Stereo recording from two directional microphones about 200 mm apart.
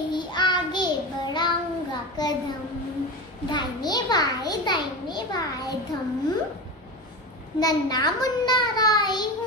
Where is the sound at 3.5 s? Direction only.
20° left (ahead or behind).